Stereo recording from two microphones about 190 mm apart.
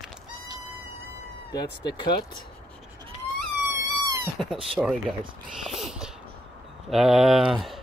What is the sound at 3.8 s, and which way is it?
Wail, 20° right (ahead or behind).